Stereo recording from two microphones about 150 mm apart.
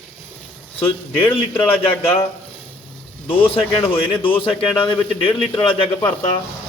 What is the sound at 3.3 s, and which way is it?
A man's voice, 35° left (ahead or behind).